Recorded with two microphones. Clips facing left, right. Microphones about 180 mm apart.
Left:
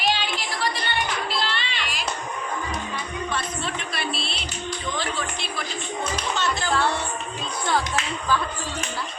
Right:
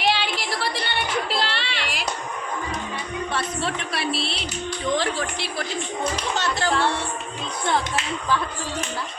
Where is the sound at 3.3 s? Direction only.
70° right (ahead or behind).